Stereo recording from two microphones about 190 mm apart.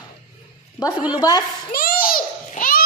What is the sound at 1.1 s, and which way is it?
Speech, 20° left (ahead or behind).